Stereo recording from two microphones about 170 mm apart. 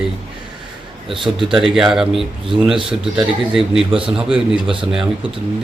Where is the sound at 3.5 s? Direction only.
Centre (ahead or behind).